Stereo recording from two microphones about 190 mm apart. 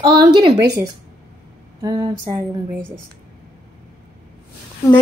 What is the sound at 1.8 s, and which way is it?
Speech, 20° right (ahead or behind).